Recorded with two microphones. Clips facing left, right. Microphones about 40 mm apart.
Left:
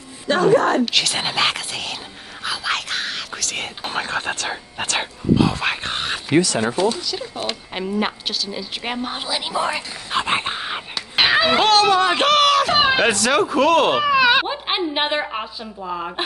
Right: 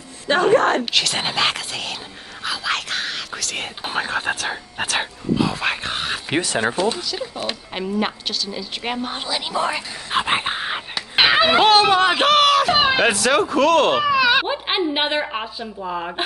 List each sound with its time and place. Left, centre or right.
0.3 s speech: right
0.8 s speech: centre
6.2 s speech: right
7.0 s a woman's voice: centre
10.1 s a sound: centre
11.5 s a woman's voice: centre
11.8 s speech: right
12.1 s speech: centre
14.1 s baby cry: centre
14.5 s a woman's voice: centre